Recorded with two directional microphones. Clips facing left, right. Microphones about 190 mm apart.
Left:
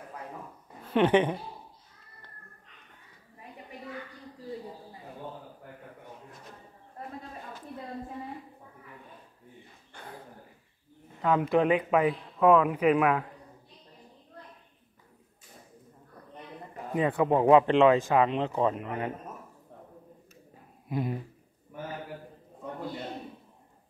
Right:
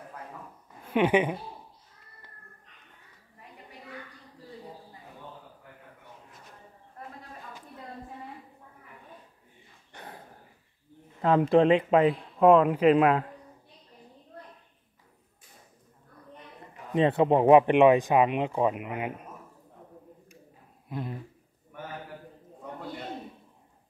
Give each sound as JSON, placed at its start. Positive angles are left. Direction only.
{"t": 0.8, "sound": "a woman's voice", "side_deg": -10}
{"t": 11.2, "sound": "speech", "side_deg": -30}
{"t": 16.9, "sound": "speech", "side_deg": -25}
{"t": 20.9, "sound": "speech", "side_deg": 10}